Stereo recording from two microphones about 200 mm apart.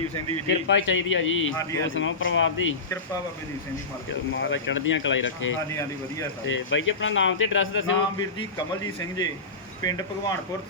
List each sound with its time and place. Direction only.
0.4 s speech: 65° left (ahead or behind)
4.3 s speech: 65° left (ahead or behind)
8.2 s speech: 20° left (ahead or behind)